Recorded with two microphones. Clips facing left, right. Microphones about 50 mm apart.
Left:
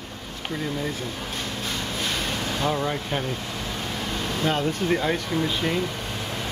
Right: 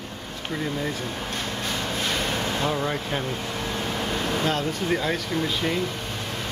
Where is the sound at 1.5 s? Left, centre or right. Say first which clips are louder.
Right 2 dB; centre.